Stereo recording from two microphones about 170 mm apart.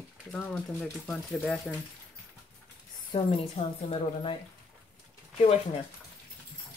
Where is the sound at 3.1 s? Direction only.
35° left (ahead or behind).